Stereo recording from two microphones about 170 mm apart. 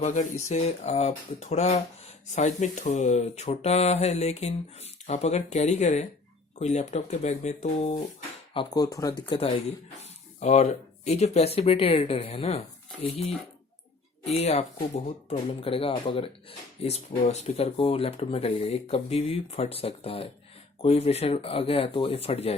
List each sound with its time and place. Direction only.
0.0 s speech: 45° left (ahead or behind)
8.5 s speech: 20° left (ahead or behind)
9.3 s speech: 35° left (ahead or behind)